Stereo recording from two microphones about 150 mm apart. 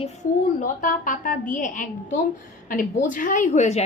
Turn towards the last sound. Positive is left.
turn(degrees=50)  # may be behind; listen again after turning